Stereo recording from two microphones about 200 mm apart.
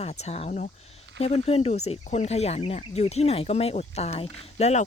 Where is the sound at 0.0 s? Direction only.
35° left (ahead or behind).